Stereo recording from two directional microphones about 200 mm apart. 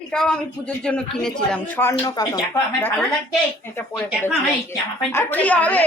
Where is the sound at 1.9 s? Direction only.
20° left (ahead or behind).